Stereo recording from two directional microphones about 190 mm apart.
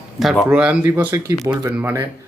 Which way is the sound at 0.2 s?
Centre (ahead or behind).